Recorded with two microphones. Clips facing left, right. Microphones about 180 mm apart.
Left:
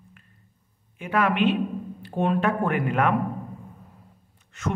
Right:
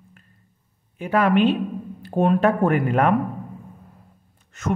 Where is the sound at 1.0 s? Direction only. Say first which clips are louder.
Right 4 dB; 35° right (ahead or behind).